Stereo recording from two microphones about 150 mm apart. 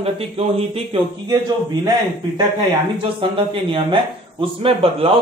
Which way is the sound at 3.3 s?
35° right (ahead or behind).